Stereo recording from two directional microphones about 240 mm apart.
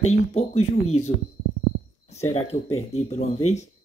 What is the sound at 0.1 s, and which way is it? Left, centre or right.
Speech, left.